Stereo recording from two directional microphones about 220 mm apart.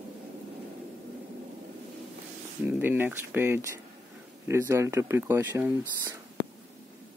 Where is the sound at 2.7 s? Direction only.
10° right (ahead or behind).